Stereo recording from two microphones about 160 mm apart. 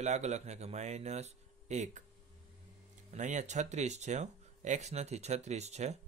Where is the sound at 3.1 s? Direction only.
50° right (ahead or behind).